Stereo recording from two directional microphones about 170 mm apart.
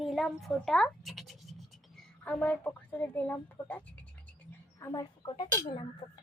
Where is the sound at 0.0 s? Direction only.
Centre (ahead or behind).